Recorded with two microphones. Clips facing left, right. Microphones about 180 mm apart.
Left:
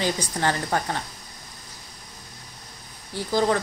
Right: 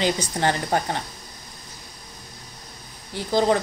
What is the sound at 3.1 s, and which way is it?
Speech, 20° right (ahead or behind).